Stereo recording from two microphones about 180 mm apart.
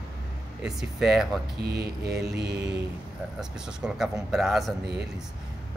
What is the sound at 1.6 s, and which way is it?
Speech, 60° right (ahead or behind).